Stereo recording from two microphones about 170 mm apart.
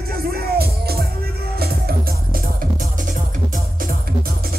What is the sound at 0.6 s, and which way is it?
Music, 65° right (ahead or behind).